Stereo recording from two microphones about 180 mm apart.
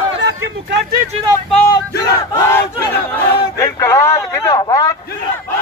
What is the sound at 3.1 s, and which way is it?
Speech, 15° left (ahead or behind).